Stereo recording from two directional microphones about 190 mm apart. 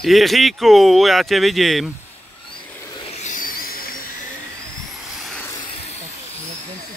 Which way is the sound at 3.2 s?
45° left (ahead or behind).